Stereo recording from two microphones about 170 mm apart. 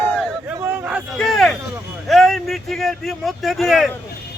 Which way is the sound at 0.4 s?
10° right (ahead or behind).